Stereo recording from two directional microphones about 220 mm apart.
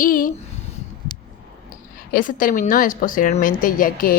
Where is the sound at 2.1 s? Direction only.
40° left (ahead or behind).